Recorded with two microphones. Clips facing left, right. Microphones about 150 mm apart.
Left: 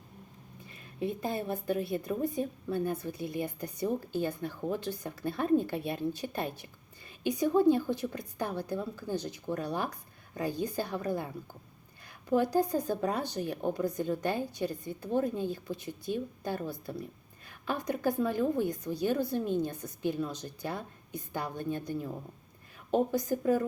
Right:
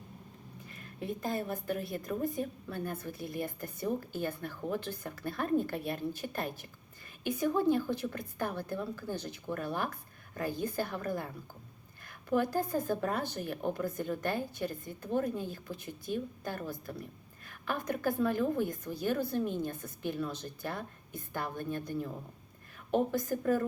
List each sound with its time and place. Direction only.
0.9 s a woman's voice: 20° left (ahead or behind)
12.5 s a woman's voice: 15° left (ahead or behind)